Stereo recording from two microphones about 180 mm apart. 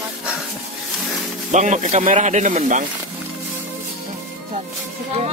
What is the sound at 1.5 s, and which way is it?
Speech, 40° right (ahead or behind).